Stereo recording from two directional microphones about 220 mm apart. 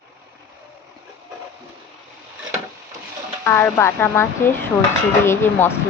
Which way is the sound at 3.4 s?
10° left (ahead or behind).